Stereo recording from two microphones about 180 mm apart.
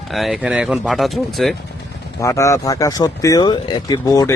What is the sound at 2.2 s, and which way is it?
Speech, 15° left (ahead or behind).